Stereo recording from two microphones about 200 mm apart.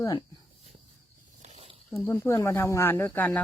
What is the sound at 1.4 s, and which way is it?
Snake, 25° right (ahead or behind).